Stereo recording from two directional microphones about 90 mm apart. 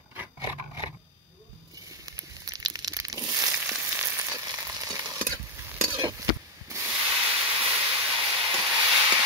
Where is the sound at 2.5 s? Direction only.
45° right (ahead or behind).